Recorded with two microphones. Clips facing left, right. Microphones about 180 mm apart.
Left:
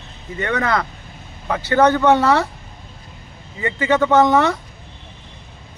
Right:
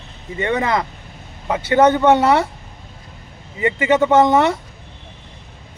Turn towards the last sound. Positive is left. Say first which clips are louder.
# right 1 dB
turn(degrees=-25)  # may be behind; listen again after turning